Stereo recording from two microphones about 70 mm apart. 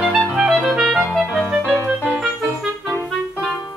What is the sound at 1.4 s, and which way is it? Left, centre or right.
Music, centre.